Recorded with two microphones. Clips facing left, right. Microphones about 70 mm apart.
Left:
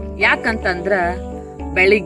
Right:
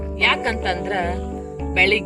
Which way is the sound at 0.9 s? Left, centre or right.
Left.